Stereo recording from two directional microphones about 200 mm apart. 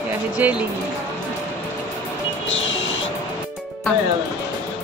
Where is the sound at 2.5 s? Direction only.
70° left (ahead or behind).